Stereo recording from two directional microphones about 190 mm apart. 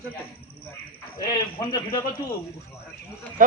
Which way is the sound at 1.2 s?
20° left (ahead or behind).